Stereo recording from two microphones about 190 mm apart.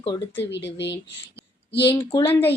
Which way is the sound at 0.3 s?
65° left (ahead or behind).